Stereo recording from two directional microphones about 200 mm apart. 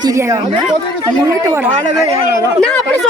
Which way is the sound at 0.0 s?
15° right (ahead or behind).